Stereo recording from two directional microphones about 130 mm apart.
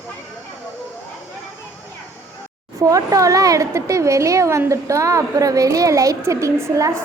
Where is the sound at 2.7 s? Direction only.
25° right (ahead or behind).